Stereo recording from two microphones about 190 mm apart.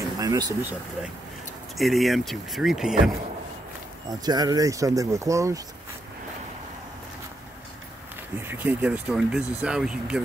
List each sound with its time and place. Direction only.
0.2 s speech: 20° right (ahead or behind)
1.8 s speech: centre (ahead or behind)
4.1 s speech: 20° right (ahead or behind)
8.4 s speech: 10° right (ahead or behind)